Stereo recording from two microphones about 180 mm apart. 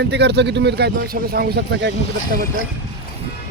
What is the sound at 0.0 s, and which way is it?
A man's voice, 70° right (ahead or behind).